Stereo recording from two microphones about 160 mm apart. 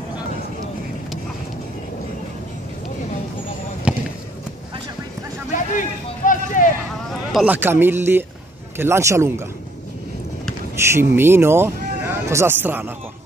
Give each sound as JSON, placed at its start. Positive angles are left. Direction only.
{"t": 3.9, "sound": "basketball bounce", "side_deg": -5}
{"t": 5.5, "sound": "a sound", "side_deg": 55}
{"t": 7.3, "sound": "speech", "side_deg": -10}
{"t": 10.8, "sound": "speech", "side_deg": -15}